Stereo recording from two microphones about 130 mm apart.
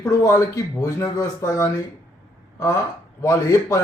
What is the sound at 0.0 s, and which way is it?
A man's voice, 25° left (ahead or behind).